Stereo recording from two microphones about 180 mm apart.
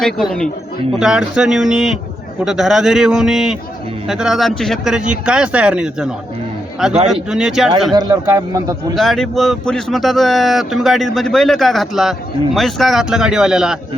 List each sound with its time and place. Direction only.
0.0 s speech: centre (ahead or behind)
7.9 s a man's voice: 20° right (ahead or behind)
9.0 s speech: centre (ahead or behind)